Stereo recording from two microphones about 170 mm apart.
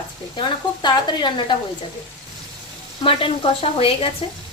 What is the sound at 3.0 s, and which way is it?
Speech, 35° left (ahead or behind).